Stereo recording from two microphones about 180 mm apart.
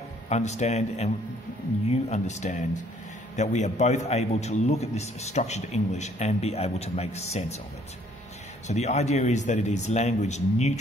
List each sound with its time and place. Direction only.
0.3 s a man's voice: 40° left (ahead or behind)
8.6 s a man's voice: 40° left (ahead or behind)